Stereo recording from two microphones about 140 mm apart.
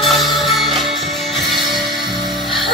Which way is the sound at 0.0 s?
Centre (ahead or behind).